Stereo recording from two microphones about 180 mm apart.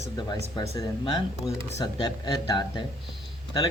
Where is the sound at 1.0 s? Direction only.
25° left (ahead or behind).